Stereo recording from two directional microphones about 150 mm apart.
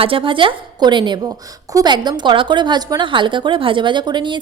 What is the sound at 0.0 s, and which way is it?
A woman's voice, 35° right (ahead or behind).